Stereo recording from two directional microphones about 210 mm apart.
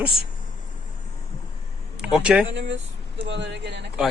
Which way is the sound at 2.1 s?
5° right (ahead or behind).